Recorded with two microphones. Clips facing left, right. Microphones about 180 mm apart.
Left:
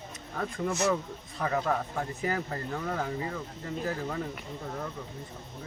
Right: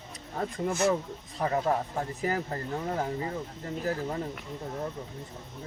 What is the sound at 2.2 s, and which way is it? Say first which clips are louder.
Speech: right 1 dB; 30° right (ahead or behind).